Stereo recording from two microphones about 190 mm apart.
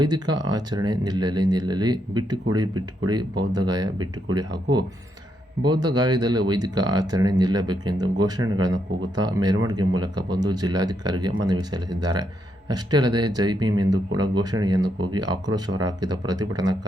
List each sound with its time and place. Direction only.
0.0 s speech: 20° right (ahead or behind)